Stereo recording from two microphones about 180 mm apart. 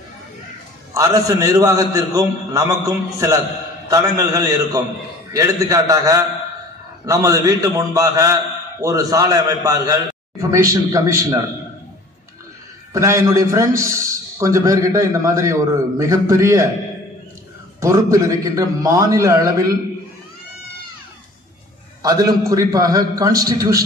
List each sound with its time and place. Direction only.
0.9 s a man's voice: 20° right (ahead or behind)
12.9 s a man's voice: 15° right (ahead or behind)
17.7 s a man's voice: 15° right (ahead or behind)
22.0 s a man's voice: 20° right (ahead or behind)